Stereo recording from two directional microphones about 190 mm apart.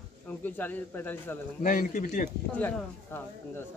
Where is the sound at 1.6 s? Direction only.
45° left (ahead or behind).